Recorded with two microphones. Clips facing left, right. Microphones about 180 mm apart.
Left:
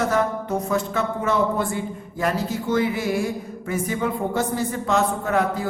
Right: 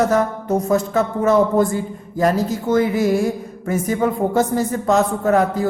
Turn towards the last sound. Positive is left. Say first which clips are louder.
# right 5 dB
turn(degrees=-40)  # may be behind; listen again after turning